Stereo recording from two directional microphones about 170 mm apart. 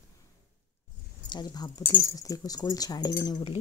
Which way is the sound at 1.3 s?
25° left (ahead or behind).